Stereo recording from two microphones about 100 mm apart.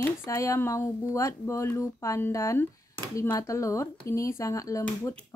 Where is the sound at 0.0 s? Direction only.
30° left (ahead or behind).